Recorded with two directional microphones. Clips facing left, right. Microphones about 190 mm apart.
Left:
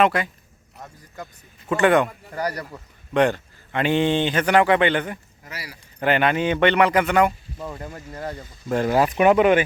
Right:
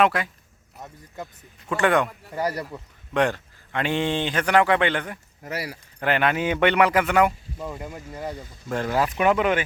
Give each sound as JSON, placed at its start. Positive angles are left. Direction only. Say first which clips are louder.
{"t": 0.0, "sound": "speech", "louder": "left 2 dB", "side_deg": 0}
{"t": 3.2, "sound": "speech", "louder": "left 3 dB", "side_deg": 0}
{"t": 5.4, "sound": "speech", "louder": "right 7 dB", "side_deg": -55}
{"t": 6.0, "sound": "speech", "louder": "left 3 dB", "side_deg": 0}
{"t": 8.7, "sound": "speech", "louder": "left 4 dB", "side_deg": 10}